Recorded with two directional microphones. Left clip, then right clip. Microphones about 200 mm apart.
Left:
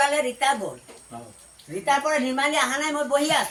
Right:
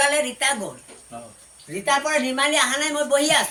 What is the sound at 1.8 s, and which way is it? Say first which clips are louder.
Speech: right 1 dB; 10° left (ahead or behind).